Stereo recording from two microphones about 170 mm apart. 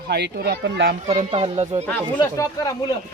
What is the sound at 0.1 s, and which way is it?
Speech, 75° right (ahead or behind).